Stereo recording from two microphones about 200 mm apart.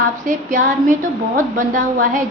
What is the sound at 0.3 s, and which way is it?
Speech, 40° right (ahead or behind).